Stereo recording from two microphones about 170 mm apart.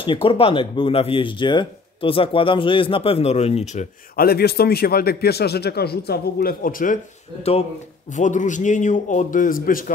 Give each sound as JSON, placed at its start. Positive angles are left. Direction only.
{"t": 0.0, "sound": "speech", "side_deg": 30}
{"t": 4.2, "sound": "a man's voice", "side_deg": 65}
{"t": 8.2, "sound": "a man's voice", "side_deg": 45}